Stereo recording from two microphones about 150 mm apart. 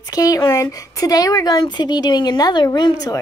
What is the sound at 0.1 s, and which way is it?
A woman's voice, 25° left (ahead or behind).